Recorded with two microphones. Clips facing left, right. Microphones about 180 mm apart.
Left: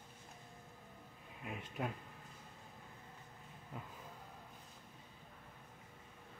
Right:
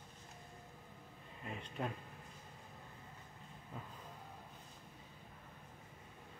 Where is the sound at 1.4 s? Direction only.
5° left (ahead or behind).